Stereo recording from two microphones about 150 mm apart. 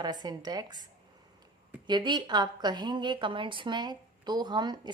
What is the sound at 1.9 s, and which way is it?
A woman's voice, 30° right (ahead or behind).